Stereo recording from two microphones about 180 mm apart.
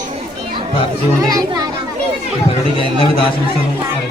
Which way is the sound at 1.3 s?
20° right (ahead or behind).